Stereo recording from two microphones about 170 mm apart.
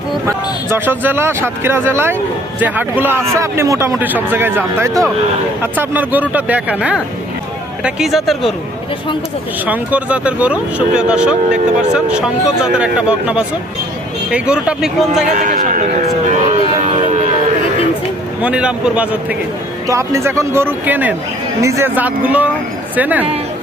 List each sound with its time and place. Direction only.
0.3 s a man's voice: 15° right (ahead or behind)
9.6 s a man's voice: 10° right (ahead or behind)
15.4 s a man's voice: 50° right (ahead or behind)
16.3 s vehicle: 40° right (ahead or behind)
18.4 s a man's voice: 5° right (ahead or behind)